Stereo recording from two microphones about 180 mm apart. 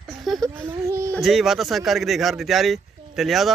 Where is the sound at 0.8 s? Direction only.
15° right (ahead or behind).